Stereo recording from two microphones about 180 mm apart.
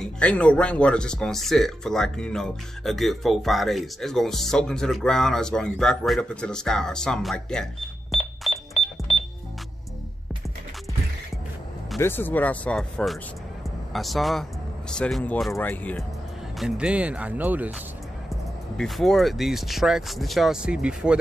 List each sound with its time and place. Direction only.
0.0 s speech: 5° left (ahead or behind)
8.7 s cash register: 35° left (ahead or behind)
12.0 s speech: 10° left (ahead or behind)
16.5 s speech: 5° right (ahead or behind)
18.8 s speech: centre (ahead or behind)